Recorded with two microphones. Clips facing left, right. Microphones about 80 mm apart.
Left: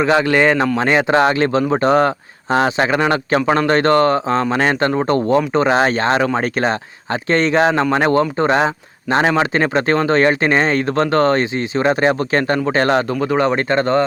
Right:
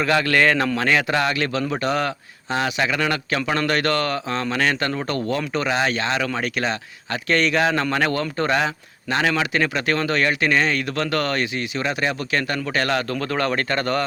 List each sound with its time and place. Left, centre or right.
0.0 s speech: left
13.1 s speech: centre